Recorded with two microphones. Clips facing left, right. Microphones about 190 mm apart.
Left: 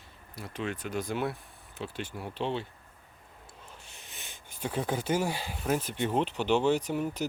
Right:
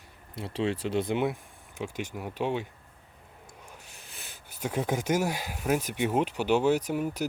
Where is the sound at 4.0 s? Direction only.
Centre (ahead or behind).